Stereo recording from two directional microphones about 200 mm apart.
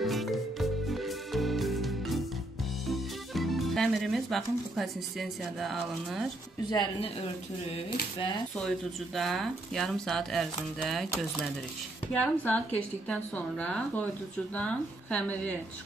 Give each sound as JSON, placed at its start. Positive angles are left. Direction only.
{"t": 0.0, "sound": "music", "side_deg": 0}
{"t": 2.9, "sound": "speech", "side_deg": 0}
{"t": 6.7, "sound": "speech", "side_deg": 20}
{"t": 8.5, "sound": "speech", "side_deg": 0}